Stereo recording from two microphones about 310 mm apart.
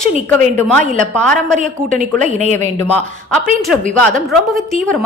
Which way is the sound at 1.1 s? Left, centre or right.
Centre.